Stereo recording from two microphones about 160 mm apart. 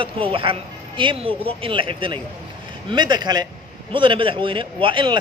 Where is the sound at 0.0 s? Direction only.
35° right (ahead or behind).